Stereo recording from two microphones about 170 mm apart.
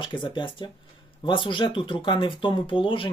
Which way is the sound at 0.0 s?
30° left (ahead or behind).